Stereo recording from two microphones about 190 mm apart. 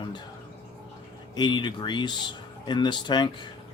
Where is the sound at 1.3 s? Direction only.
25° left (ahead or behind).